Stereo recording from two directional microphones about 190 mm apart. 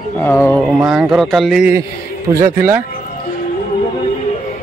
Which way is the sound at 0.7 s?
5° right (ahead or behind).